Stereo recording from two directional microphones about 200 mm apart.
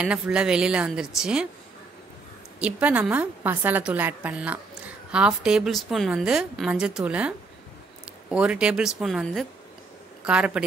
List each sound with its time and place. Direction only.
0.0 s a woman's voice: 5° right (ahead or behind)
2.6 s a woman's voice: 5° right (ahead or behind)